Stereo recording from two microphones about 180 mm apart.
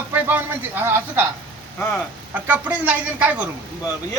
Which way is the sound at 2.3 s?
10° right (ahead or behind).